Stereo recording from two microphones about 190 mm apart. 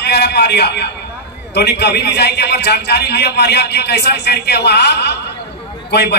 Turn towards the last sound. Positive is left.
turn(degrees=60)  # may be behind; listen again after turning